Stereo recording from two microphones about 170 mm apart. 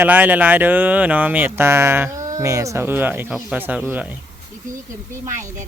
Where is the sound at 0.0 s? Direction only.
10° right (ahead or behind).